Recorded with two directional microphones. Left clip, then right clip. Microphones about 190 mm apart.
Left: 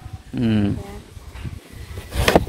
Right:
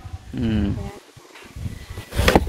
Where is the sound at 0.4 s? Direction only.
35° left (ahead or behind).